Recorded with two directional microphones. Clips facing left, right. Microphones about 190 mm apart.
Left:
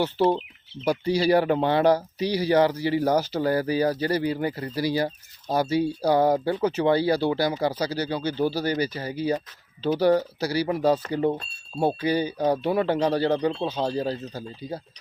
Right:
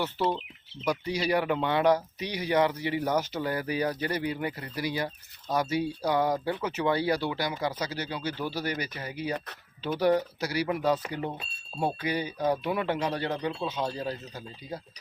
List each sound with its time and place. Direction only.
0.0 s speech: 30° left (ahead or behind)